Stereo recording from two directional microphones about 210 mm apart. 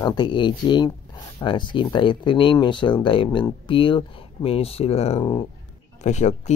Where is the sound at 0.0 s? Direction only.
20° left (ahead or behind).